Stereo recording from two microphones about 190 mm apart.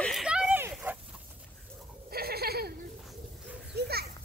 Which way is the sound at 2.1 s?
55° right (ahead or behind).